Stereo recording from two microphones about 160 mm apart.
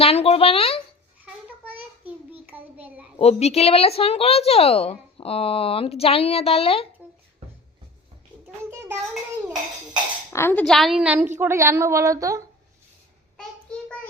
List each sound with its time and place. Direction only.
0.0 s speech: 35° left (ahead or behind)
1.2 s child singing: 10° right (ahead or behind)
3.2 s a woman's voice: 40° left (ahead or behind)
10.3 s speech: 15° left (ahead or behind)
10.7 s a woman's voice: centre (ahead or behind); by 12.4 s 20° right (ahead or behind)
13.3 s child singing: 5° left (ahead or behind)